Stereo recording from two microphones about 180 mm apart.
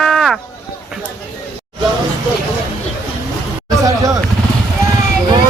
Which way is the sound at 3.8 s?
20° right (ahead or behind).